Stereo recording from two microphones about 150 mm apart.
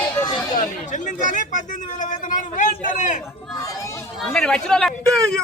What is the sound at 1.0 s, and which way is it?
Speech, 55° left (ahead or behind).